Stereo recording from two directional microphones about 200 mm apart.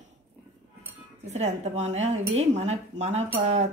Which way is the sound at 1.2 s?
35° right (ahead or behind).